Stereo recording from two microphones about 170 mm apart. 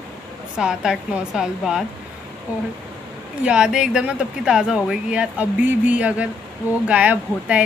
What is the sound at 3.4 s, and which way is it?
Speech, 5° right (ahead or behind).